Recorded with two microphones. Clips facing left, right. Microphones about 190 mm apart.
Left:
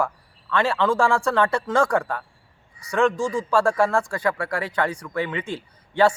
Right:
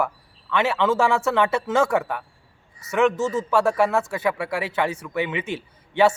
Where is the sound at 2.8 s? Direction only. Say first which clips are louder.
Right 1 dB; 20° right (ahead or behind).